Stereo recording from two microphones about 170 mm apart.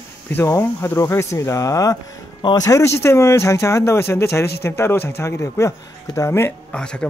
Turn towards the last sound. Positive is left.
turn(degrees=5)  # may be behind; listen again after turning